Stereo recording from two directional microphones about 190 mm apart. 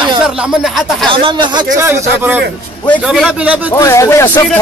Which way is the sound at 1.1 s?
25° right (ahead or behind).